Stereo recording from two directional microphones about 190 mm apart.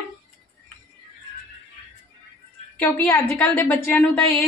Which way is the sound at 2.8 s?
10° left (ahead or behind).